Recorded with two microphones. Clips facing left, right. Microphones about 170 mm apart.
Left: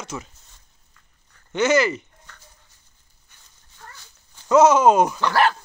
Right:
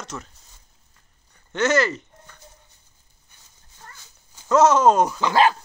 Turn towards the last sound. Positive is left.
turn(degrees=-15)  # may be behind; listen again after turning